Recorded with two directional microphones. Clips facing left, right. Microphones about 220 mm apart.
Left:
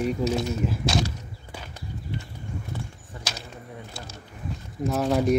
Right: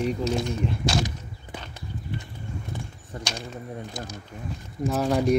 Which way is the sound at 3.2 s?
5° left (ahead or behind).